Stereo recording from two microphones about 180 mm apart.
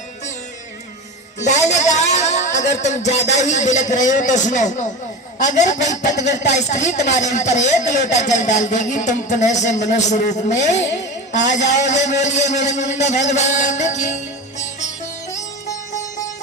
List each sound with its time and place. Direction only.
1.4 s music: 40° left (ahead or behind)
2.7 s a man's voice: 40° left (ahead or behind)
16.0 s sitar: 20° left (ahead or behind)